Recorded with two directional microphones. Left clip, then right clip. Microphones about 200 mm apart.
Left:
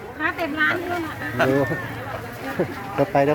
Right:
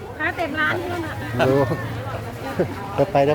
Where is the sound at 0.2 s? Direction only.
50° left (ahead or behind).